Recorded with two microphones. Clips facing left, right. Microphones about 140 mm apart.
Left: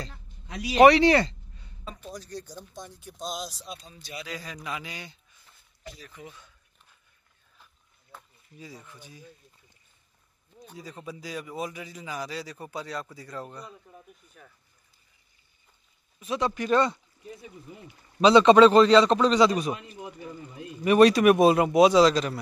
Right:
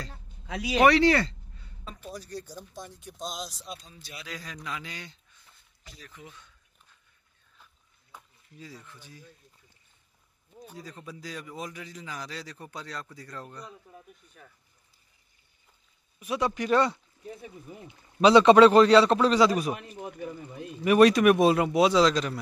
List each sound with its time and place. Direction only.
0.7 s speech: 20° left (ahead or behind)
1.9 s speech: 5° right (ahead or behind)
8.5 s a man's voice: 15° left (ahead or behind)
10.5 s a sound: 10° right (ahead or behind)
10.8 s a man's voice: 10° left (ahead or behind)
16.2 s a man's voice: 10° right (ahead or behind)
18.2 s a man's voice: 10° right (ahead or behind)
20.8 s speech: centre (ahead or behind)
21.5 s a man's voice: 20° left (ahead or behind)